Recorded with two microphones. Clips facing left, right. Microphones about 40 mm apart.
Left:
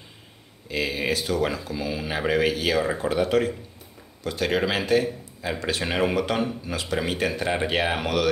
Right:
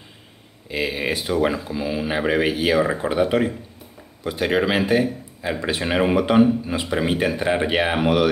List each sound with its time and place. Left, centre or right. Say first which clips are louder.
0.7 s a man's voice: right 2 dB; centre